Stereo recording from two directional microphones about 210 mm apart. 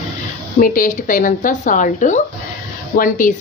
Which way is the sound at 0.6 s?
40° left (ahead or behind).